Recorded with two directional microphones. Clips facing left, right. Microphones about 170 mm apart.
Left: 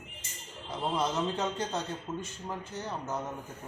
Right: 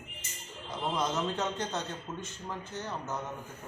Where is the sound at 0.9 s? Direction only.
10° left (ahead or behind).